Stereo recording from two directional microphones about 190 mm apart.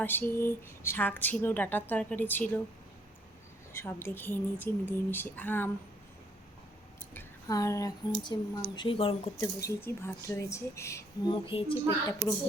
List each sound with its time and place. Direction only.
0.0 s speech: 10° left (ahead or behind)
3.7 s speech: 15° left (ahead or behind)
7.1 s speech: 15° left (ahead or behind)
9.6 s speech: 15° left (ahead or behind)
11.3 s speech: 25° left (ahead or behind)